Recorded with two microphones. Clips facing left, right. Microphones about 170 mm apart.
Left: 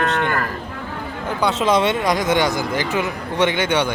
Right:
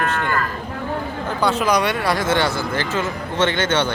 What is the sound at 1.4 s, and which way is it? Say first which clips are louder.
Speech: left 1 dB; 20° left (ahead or behind).